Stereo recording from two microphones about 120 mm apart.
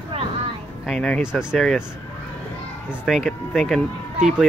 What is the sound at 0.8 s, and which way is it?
Speech, 5° left (ahead or behind).